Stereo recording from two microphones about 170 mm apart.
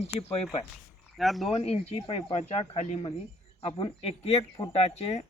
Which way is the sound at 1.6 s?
40° left (ahead or behind).